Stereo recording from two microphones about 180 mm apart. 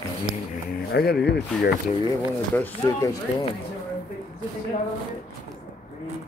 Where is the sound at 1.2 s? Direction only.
70° left (ahead or behind).